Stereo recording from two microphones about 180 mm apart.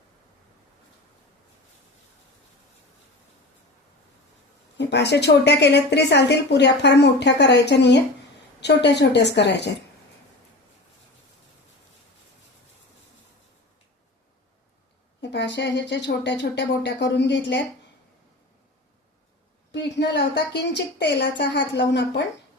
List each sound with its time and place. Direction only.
4.8 s a woman's voice: 75° left (ahead or behind)
15.2 s a woman's voice: 75° left (ahead or behind)
19.7 s a woman's voice: 75° left (ahead or behind)